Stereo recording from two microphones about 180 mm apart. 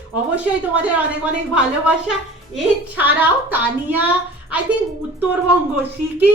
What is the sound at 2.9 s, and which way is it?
A woman's voice, 10° right (ahead or behind).